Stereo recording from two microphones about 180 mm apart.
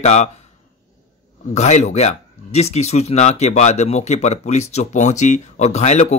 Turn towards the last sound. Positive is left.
turn(degrees=40)  # may be behind; listen again after turning